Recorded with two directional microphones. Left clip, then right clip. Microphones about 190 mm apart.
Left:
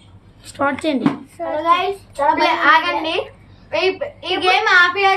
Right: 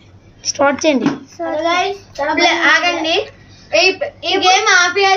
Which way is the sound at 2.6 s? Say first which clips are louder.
Right 1 dB; 35° left (ahead or behind).